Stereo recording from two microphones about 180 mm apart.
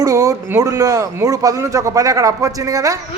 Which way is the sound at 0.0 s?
20° right (ahead or behind).